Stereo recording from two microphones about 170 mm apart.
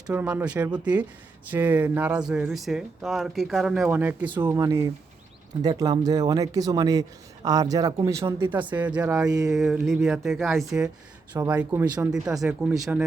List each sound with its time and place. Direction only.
0.1 s speech: 10° right (ahead or behind)
11.3 s speech: 10° right (ahead or behind)
12.7 s speech: 20° right (ahead or behind)